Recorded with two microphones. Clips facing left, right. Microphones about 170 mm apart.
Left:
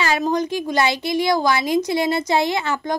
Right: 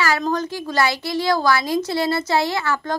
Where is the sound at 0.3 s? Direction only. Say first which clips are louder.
Left 3 dB; 15° left (ahead or behind).